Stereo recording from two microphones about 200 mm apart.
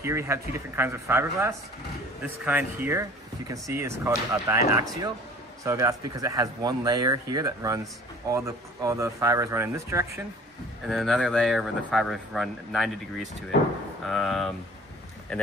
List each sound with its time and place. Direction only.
0.0 s speech: 15° right (ahead or behind)
10.9 s speech: centre (ahead or behind)